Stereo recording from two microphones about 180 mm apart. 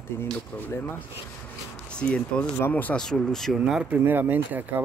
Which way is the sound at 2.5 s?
10° left (ahead or behind).